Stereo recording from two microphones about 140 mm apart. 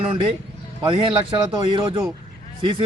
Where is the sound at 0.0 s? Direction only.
40° right (ahead or behind).